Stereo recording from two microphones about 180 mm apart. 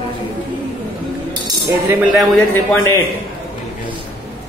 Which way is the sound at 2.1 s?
10° left (ahead or behind).